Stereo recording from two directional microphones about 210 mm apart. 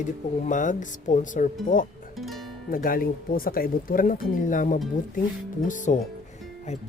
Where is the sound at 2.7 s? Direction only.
45° left (ahead or behind).